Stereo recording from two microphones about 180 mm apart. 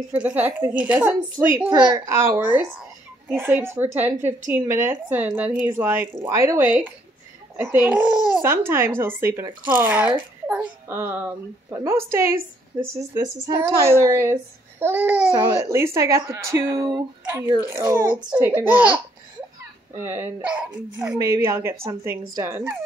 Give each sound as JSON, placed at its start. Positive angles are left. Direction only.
{"t": 0.1, "sound": "speech", "side_deg": -10}
{"t": 1.6, "sound": "speech", "side_deg": -20}